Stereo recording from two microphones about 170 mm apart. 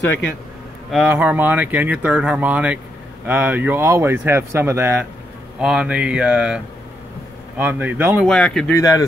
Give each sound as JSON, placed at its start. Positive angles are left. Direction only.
{"t": 0.9, "sound": "speech", "side_deg": -10}
{"t": 8.3, "sound": "speech", "side_deg": 5}
{"t": 8.7, "sound": "speech", "side_deg": 20}